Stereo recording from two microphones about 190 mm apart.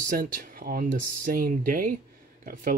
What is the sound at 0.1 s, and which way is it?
Speech, 45° right (ahead or behind).